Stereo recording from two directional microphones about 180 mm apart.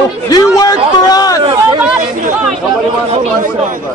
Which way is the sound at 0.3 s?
20° left (ahead or behind).